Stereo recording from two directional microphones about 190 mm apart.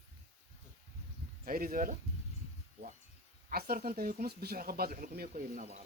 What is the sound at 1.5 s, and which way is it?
Speech, 50° right (ahead or behind).